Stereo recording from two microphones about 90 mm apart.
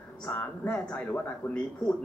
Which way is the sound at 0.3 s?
15° left (ahead or behind).